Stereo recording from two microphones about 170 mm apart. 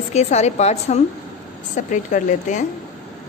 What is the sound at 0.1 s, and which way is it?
A woman's voice, 40° left (ahead or behind).